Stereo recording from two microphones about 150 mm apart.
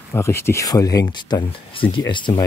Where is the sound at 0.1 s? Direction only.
15° left (ahead or behind).